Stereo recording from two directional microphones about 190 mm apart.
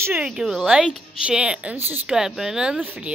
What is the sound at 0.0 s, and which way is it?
A woman's voice, 10° right (ahead or behind).